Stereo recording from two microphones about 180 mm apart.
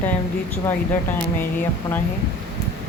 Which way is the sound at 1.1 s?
10° left (ahead or behind).